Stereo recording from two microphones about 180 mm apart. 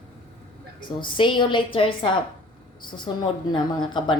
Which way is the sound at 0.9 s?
25° left (ahead or behind).